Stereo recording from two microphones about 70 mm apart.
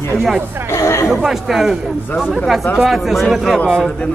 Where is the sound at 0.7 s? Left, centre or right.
Left.